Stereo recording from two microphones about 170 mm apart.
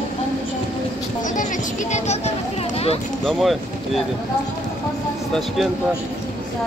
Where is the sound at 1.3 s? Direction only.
45° left (ahead or behind).